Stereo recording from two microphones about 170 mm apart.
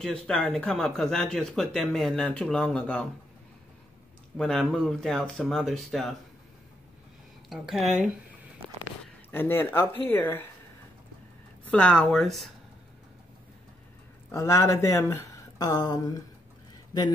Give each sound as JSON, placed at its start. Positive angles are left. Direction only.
{"t": 0.0, "sound": "speech", "side_deg": 5}
{"t": 4.4, "sound": "speech", "side_deg": 5}
{"t": 7.4, "sound": "speech", "side_deg": 0}
{"t": 9.3, "sound": "speech", "side_deg": 10}
{"t": 11.6, "sound": "speech", "side_deg": 5}
{"t": 14.3, "sound": "speech", "side_deg": 15}